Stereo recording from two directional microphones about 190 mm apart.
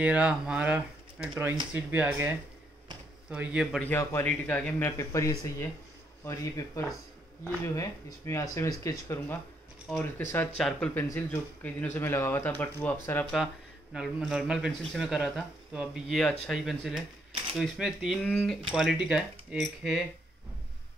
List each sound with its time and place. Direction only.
0.0 s speech: 5° right (ahead or behind)
3.8 s speech: 15° left (ahead or behind)
9.8 s speech: 5° left (ahead or behind)
13.9 s speech: 5° right (ahead or behind)